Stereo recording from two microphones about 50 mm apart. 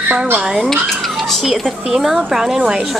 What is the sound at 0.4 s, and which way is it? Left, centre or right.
Speech, centre.